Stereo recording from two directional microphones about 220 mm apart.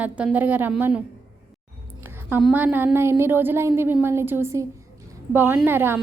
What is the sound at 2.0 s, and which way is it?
A woman's voice, 10° right (ahead or behind).